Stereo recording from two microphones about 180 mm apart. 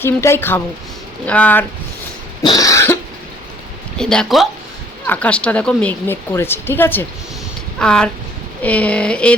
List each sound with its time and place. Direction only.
0.0 s a woman's voice: 15° left (ahead or behind)
2.4 s cough: 20° left (ahead or behind)
3.9 s a woman's voice: 5° left (ahead or behind)